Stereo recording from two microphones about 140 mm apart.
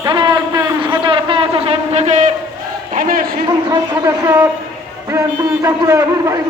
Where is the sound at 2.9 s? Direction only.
80° right.